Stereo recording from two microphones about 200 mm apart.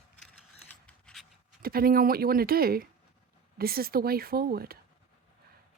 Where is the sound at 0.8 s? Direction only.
Centre (ahead or behind).